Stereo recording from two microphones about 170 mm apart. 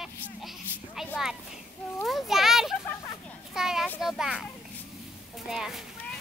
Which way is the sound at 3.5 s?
Centre (ahead or behind).